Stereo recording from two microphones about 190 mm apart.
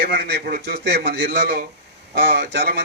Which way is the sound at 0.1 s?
60° right (ahead or behind).